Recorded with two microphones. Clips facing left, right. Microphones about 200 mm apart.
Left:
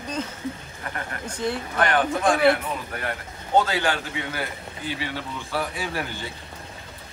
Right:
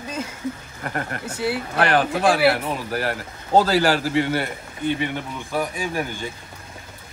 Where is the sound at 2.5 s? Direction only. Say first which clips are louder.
Right 5 dB; 35° right (ahead or behind).